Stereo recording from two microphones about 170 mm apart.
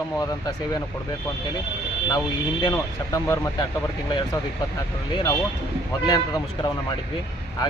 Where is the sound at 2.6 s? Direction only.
25° left (ahead or behind).